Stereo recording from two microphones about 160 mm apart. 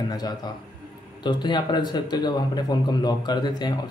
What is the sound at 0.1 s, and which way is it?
Speech, 25° left (ahead or behind).